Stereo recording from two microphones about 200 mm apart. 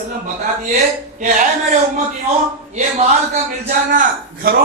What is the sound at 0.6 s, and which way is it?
Speech, 40° right (ahead or behind).